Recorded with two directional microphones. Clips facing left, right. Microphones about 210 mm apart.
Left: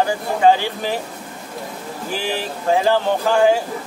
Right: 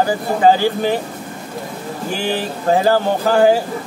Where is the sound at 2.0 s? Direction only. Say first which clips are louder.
Right 3 dB; centre (ahead or behind).